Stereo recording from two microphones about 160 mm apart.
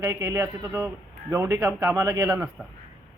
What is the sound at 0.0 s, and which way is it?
A man's voice, 20° right (ahead or behind).